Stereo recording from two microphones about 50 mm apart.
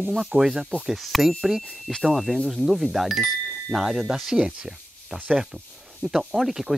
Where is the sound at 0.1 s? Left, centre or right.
Centre.